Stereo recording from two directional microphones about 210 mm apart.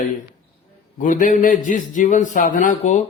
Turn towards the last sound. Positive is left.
turn(degrees=35)  # may be behind; listen again after turning